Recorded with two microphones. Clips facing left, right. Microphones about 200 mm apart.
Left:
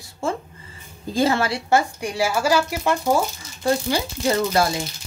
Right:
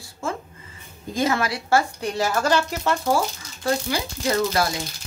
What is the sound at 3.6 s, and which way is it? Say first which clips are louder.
A woman's voice: left 3 dB; 30° left (ahead or behind).